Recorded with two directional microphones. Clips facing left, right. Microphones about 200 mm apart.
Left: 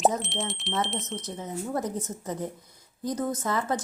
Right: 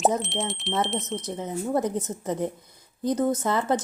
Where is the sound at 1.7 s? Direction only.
20° right (ahead or behind).